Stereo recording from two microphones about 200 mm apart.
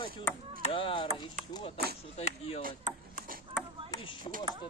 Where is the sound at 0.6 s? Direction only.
25° left (ahead or behind).